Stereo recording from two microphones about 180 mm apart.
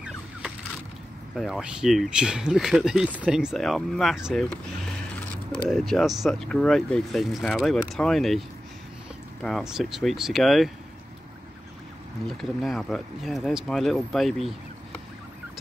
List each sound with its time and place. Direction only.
1.3 s speech: centre (ahead or behind)
5.6 s speech: centre (ahead or behind)
12.3 s speech: centre (ahead or behind)